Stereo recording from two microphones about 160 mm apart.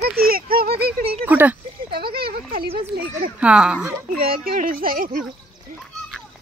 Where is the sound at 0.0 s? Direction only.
70° right (ahead or behind).